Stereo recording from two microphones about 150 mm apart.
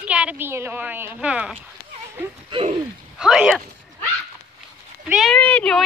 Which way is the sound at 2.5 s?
40° right (ahead or behind).